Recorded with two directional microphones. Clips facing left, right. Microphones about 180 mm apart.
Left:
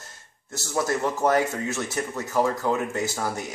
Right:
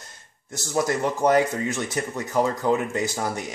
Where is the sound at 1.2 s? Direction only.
15° right (ahead or behind).